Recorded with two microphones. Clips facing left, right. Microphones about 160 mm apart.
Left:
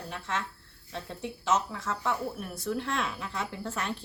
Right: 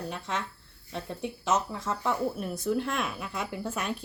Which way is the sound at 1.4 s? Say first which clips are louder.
Even; 15° right (ahead or behind).